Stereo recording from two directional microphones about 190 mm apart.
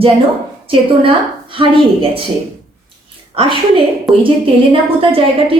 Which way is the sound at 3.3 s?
30° right (ahead or behind).